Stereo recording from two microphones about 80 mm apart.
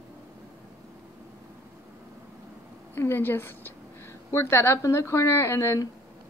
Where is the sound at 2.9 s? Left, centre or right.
Left.